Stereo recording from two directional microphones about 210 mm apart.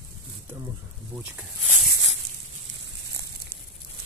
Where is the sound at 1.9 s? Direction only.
60° right (ahead or behind).